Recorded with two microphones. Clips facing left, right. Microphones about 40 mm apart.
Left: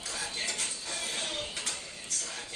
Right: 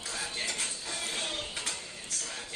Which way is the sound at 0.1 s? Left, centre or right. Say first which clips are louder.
Even; centre.